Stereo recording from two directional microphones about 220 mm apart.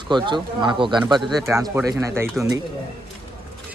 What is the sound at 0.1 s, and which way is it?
Speech, 20° right (ahead or behind).